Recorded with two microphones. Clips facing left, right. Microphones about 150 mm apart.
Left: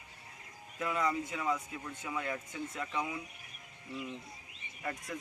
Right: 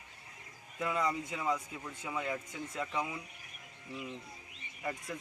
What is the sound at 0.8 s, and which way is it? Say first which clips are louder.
Speech: even; centre (ahead or behind).